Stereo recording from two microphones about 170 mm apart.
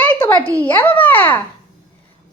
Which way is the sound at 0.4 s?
30° left (ahead or behind).